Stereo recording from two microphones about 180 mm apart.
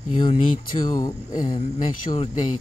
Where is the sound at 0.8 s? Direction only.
20° left (ahead or behind).